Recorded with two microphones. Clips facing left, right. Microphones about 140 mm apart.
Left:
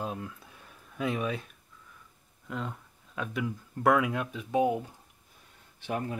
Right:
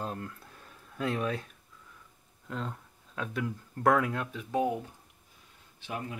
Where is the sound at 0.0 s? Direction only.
5° left (ahead or behind).